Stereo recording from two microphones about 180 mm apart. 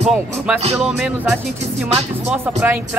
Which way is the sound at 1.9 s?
35° right (ahead or behind).